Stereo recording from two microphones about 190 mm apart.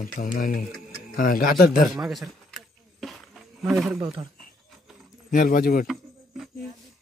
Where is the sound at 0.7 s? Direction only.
Centre (ahead or behind).